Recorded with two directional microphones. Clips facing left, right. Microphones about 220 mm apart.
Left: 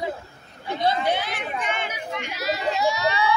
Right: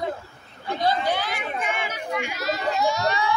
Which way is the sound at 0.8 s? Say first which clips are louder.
Left 1 dB; 25° left (ahead or behind).